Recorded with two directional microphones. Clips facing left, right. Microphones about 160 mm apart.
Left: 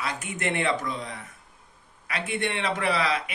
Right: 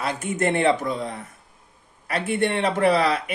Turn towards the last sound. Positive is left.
turn(degrees=-45)  # may be behind; listen again after turning